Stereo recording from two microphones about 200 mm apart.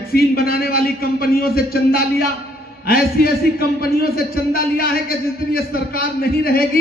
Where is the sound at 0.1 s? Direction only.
50° left (ahead or behind).